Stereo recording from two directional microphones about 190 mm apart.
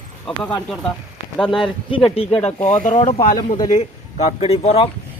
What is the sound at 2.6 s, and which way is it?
Speech, 40° left (ahead or behind).